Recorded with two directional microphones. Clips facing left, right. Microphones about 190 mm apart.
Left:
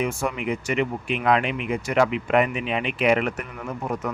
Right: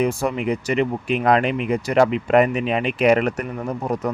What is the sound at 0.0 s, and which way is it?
Speech, 35° right (ahead or behind).